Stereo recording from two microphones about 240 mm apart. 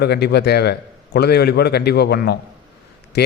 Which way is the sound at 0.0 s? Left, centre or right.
Left.